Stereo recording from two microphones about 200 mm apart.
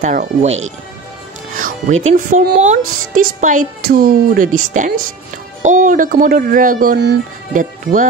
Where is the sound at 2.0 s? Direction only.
35° right (ahead or behind).